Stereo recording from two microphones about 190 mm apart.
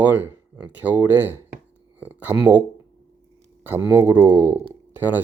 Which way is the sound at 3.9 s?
10° right (ahead or behind).